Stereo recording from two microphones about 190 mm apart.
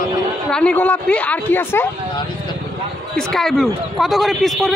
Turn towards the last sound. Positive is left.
turn(degrees=0)  # may be behind; listen again after turning